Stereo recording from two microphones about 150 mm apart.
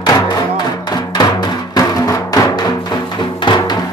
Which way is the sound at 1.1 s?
30° left (ahead or behind).